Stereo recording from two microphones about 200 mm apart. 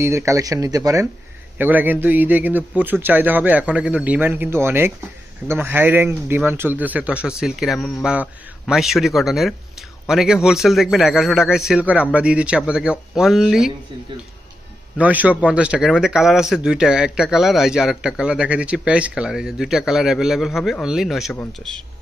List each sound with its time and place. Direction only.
0.0 s a man's voice: 15° right (ahead or behind)
15.0 s speech: 5° right (ahead or behind)